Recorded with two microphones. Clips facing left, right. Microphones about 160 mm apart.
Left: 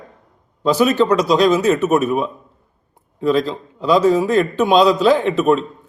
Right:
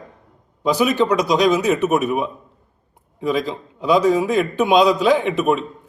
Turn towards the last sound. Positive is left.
turn(degrees=-10)  # may be behind; listen again after turning